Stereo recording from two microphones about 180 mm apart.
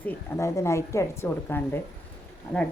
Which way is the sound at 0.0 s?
15° left (ahead or behind).